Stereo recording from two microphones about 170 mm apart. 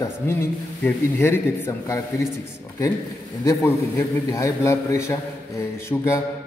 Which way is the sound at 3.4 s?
20° left (ahead or behind).